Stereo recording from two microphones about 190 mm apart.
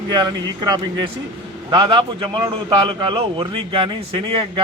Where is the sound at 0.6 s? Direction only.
20° right (ahead or behind).